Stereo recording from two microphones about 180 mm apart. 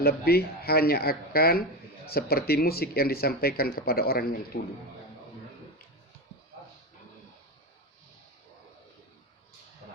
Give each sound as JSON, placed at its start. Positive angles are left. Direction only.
{"t": 0.0, "sound": "speech", "side_deg": 60}